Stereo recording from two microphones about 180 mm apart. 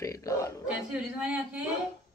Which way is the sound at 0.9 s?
5° right (ahead or behind).